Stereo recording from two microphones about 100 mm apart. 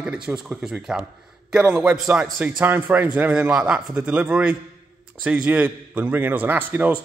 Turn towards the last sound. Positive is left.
turn(degrees=-15)  # may be behind; listen again after turning